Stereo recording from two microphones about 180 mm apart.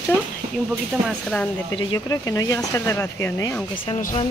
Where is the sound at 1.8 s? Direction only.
25° left (ahead or behind).